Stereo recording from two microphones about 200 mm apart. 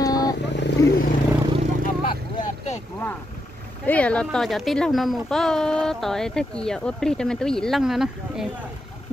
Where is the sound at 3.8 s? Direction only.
5° left (ahead or behind).